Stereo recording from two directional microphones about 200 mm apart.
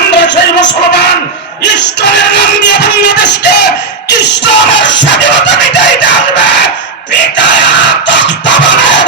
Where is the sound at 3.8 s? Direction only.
60° left (ahead or behind).